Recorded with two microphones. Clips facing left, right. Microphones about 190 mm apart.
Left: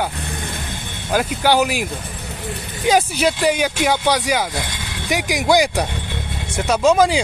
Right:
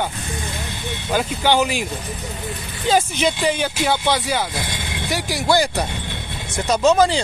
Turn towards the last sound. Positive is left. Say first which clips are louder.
# left 1 dB
turn(degrees=10)  # may be behind; listen again after turning